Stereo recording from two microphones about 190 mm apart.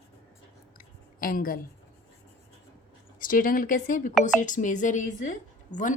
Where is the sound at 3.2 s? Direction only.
45° left (ahead or behind).